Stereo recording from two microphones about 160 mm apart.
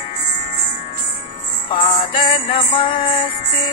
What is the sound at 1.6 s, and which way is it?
Music, 30° left (ahead or behind).